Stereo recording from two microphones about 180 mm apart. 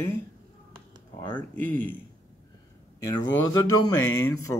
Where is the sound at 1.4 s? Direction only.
10° left (ahead or behind).